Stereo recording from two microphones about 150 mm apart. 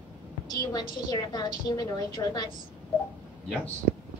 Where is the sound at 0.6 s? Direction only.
25° left (ahead or behind).